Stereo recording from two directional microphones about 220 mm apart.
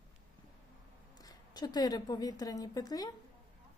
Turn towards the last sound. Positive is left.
turn(degrees=15)  # may be behind; listen again after turning